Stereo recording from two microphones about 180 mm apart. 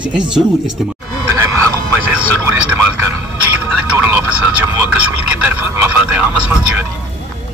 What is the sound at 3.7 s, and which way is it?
Vehicle, 10° right (ahead or behind).